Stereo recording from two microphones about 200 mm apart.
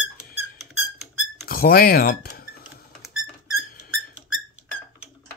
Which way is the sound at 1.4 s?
50° left (ahead or behind).